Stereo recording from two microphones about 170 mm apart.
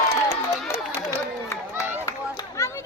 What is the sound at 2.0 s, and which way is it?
Run, 20° left (ahead or behind).